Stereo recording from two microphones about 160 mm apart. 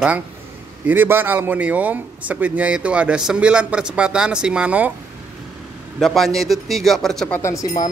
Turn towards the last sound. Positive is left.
turn(degrees=20)  # may be behind; listen again after turning